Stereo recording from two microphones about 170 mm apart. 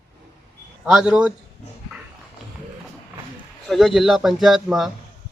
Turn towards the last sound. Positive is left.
turn(degrees=0)  # may be behind; listen again after turning